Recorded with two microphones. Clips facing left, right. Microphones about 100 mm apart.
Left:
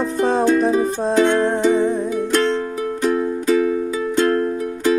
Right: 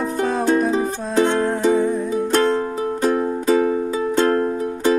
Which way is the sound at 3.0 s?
35° right (ahead or behind).